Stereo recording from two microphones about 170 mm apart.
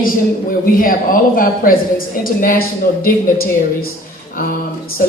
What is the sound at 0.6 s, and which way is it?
Speech, 55° left (ahead or behind).